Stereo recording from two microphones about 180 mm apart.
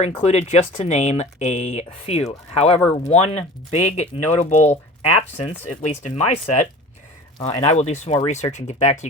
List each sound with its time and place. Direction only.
0.0 s speech: 40° left (ahead or behind)